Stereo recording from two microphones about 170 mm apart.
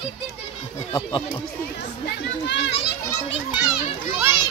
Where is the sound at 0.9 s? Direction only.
30° left (ahead or behind).